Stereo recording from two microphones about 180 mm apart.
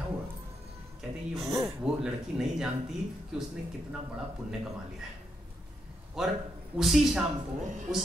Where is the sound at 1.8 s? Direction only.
5° right (ahead or behind).